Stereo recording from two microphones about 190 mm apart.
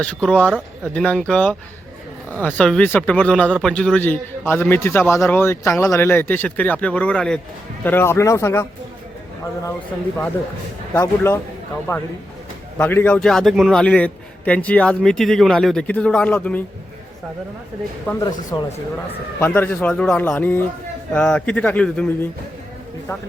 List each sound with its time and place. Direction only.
0.0 s a man's voice: 5° left (ahead or behind)
10.9 s a man's voice: 15° left (ahead or behind)
18.1 s speech: 5° left (ahead or behind)
18.5 s a man's voice: 20° left (ahead or behind)